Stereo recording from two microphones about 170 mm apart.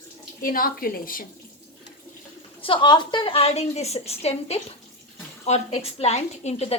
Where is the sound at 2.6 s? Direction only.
30° left (ahead or behind).